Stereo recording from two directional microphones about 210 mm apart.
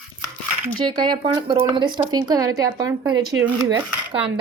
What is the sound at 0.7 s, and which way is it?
Speech, 20° right (ahead or behind).